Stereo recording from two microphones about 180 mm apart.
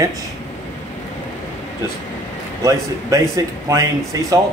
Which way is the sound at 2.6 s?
15° right (ahead or behind).